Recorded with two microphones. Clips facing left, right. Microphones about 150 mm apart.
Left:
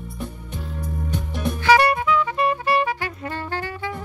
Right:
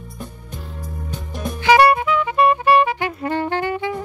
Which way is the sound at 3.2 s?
65° right (ahead or behind).